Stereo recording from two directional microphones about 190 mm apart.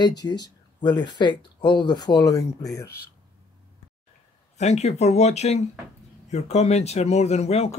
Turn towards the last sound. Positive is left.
turn(degrees=35)  # may be behind; listen again after turning